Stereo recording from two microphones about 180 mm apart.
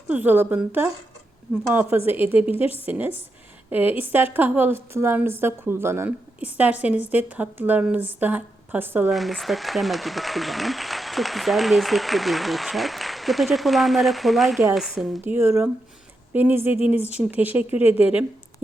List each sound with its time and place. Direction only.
0.1 s speech: 10° right (ahead or behind)
9.0 s speech: centre (ahead or behind)
15.2 s speech: 15° right (ahead or behind)
16.9 s speech: 35° left (ahead or behind)
17.2 s speech: 10° right (ahead or behind)